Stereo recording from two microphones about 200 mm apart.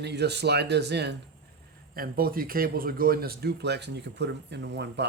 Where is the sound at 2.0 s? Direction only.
45° right (ahead or behind).